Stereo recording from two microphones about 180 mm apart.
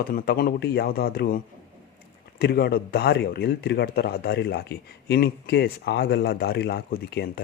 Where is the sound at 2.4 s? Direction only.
60° left (ahead or behind).